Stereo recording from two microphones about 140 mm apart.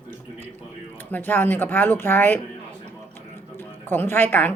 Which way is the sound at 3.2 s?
15° left (ahead or behind).